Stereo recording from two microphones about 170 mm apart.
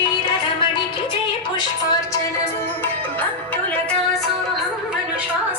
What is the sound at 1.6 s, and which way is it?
Music, 20° left (ahead or behind).